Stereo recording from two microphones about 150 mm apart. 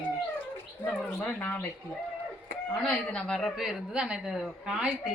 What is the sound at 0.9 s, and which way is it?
Speech, 5° left (ahead or behind).